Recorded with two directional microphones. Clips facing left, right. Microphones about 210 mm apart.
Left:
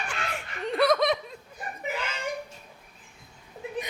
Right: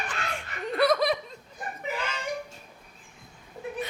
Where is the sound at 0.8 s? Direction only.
Centre (ahead or behind).